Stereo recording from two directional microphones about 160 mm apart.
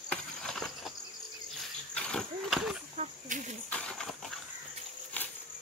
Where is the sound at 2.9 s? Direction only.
50° right (ahead or behind).